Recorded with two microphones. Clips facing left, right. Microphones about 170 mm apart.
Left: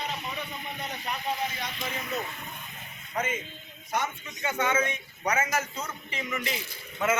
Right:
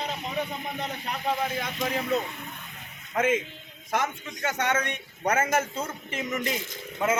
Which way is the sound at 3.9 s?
90° right.